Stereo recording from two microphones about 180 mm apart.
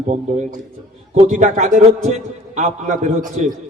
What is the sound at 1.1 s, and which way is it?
Speech, 40° right (ahead or behind).